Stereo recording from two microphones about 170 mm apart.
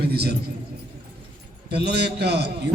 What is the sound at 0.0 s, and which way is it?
Vehicle, 70° right (ahead or behind).